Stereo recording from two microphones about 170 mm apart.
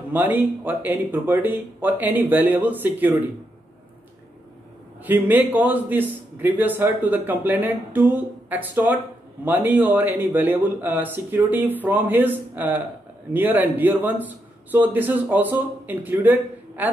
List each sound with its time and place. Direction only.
0.1 s a man's voice: 10° right (ahead or behind)
5.0 s a man's voice: 10° right (ahead or behind)